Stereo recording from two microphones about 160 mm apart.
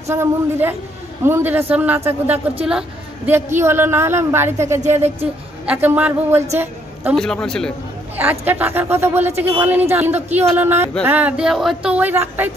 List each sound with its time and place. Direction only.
0.1 s speech: 15° right (ahead or behind)
4.8 s speech: 40° right (ahead or behind)
5.7 s speech: 10° right (ahead or behind)
6.6 s a sound: 10° right (ahead or behind)
7.2 s a man's voice: 5° left (ahead or behind)
8.2 s speech: 10° right (ahead or behind)